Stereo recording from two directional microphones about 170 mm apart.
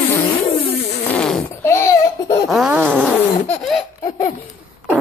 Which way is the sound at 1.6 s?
15° left (ahead or behind).